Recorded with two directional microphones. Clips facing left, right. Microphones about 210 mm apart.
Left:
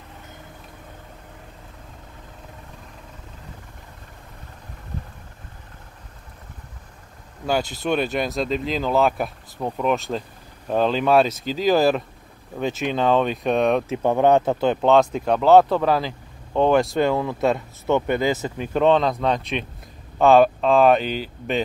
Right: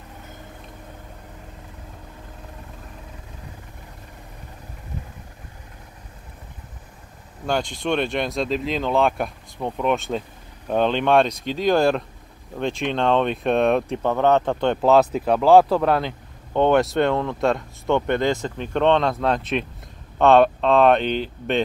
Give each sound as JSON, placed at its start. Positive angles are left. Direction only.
{"t": 7.4, "sound": "speech", "side_deg": 5}